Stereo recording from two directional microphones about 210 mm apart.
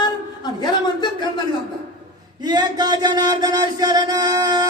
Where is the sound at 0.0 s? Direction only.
20° left (ahead or behind).